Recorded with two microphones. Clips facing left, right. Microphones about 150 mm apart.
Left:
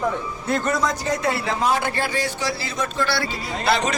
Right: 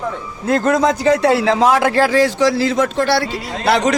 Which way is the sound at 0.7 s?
80° right.